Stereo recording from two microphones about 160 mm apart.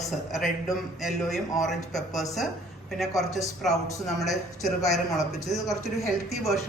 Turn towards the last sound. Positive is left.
turn(degrees=0)  # may be behind; listen again after turning